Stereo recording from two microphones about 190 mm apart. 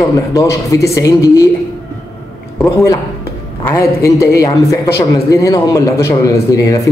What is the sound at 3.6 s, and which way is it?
Speech, 15° left (ahead or behind).